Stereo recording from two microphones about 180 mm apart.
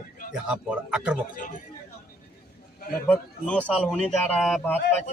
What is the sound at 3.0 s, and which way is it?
A man's voice, 5° left (ahead or behind).